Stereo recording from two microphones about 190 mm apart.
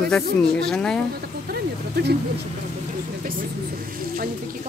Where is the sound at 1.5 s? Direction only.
55° right (ahead or behind).